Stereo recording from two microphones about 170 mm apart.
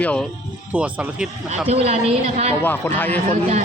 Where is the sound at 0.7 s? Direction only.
10° right (ahead or behind).